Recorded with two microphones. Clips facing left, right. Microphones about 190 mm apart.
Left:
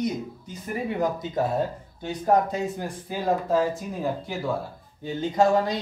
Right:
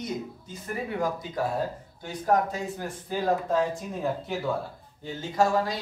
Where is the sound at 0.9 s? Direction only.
20° left (ahead or behind).